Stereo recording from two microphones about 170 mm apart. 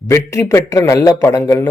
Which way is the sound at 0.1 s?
15° left (ahead or behind).